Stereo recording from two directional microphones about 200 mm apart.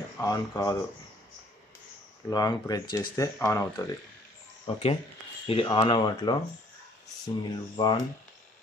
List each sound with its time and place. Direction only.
0.2 s speech: 15° left (ahead or behind)
2.2 s speech: 20° left (ahead or behind)
4.6 s speech: 30° left (ahead or behind)